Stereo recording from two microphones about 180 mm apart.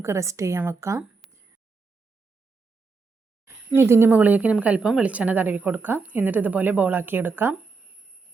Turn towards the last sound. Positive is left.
turn(degrees=-10)  # may be behind; listen again after turning